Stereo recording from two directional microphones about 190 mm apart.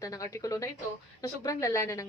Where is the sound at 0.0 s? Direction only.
15° left (ahead or behind).